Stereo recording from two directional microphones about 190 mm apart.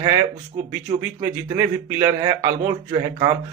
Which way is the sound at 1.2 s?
10° right (ahead or behind).